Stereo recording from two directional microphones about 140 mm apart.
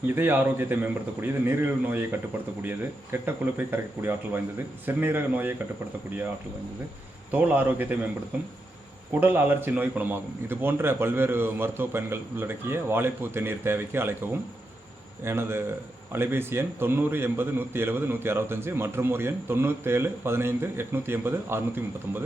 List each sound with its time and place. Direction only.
0.1 s a man's voice: 15° right (ahead or behind)
7.3 s a man's voice: 10° right (ahead or behind)
9.2 s a man's voice: 15° right (ahead or behind)